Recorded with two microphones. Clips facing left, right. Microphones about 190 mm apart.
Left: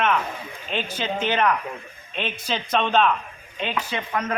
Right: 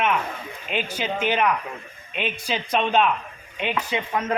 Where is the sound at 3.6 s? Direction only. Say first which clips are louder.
Right 2 dB; 20° right (ahead or behind).